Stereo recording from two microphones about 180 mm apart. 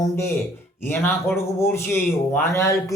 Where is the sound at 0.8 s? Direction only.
10° left (ahead or behind).